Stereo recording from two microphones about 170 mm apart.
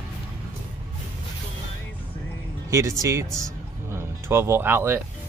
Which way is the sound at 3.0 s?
20° right (ahead or behind).